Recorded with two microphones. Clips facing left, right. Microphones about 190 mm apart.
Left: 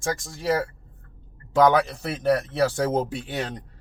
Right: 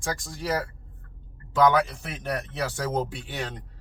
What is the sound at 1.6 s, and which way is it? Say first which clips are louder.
Speech: left 2 dB; 40° left (ahead or behind).